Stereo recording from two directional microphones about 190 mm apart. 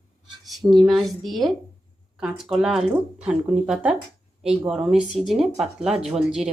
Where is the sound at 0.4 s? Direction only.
Centre (ahead or behind).